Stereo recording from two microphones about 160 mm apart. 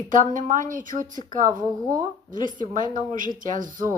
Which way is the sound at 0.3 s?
55° right (ahead or behind).